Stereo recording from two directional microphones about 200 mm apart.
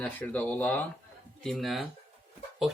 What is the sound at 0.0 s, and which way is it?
Speech, 5° left (ahead or behind).